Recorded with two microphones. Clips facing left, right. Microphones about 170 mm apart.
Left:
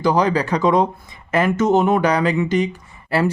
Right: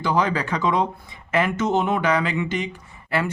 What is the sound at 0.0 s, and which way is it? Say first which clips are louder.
Speech: left 5 dB; 40° left (ahead or behind).